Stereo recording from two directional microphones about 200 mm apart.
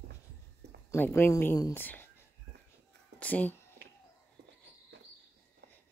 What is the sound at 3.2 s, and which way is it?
Speech, 10° left (ahead or behind).